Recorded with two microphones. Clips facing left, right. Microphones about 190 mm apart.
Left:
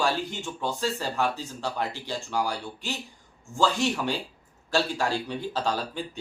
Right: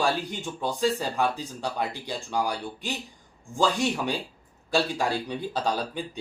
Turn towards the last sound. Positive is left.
turn(degrees=-15)  # may be behind; listen again after turning